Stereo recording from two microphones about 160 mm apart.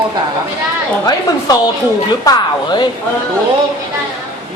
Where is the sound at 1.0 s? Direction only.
25° left (ahead or behind).